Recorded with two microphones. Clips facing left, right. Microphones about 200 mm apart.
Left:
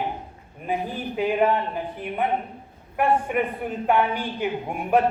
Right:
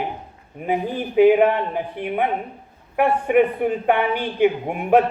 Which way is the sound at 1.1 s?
65° right (ahead or behind).